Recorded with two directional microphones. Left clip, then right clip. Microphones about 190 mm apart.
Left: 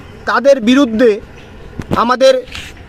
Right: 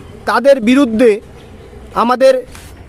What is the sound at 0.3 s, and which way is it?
Speech, 10° right (ahead or behind).